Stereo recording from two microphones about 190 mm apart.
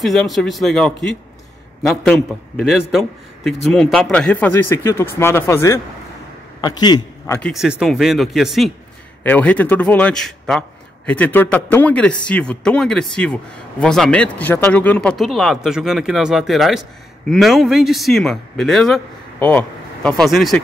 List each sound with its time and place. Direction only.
0.0 s a man's voice: centre (ahead or behind); by 7.3 s 20° left (ahead or behind)
7.3 s speech: centre (ahead or behind)